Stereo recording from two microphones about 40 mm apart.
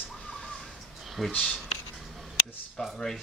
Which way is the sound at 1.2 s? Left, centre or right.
Centre.